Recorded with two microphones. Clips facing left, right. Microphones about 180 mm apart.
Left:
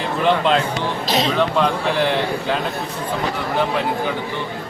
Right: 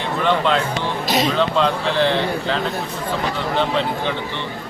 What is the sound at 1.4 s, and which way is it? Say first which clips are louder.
Speech: even; 15° left (ahead or behind).